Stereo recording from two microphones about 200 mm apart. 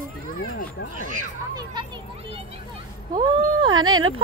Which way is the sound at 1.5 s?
20° right (ahead or behind).